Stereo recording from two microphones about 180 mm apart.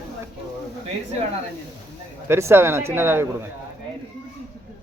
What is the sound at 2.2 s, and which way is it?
Speech, 15° right (ahead or behind).